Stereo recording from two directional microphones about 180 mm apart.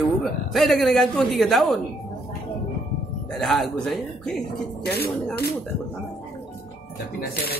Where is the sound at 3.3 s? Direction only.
Centre (ahead or behind).